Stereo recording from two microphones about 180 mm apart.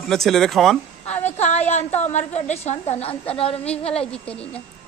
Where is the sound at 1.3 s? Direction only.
40° left (ahead or behind).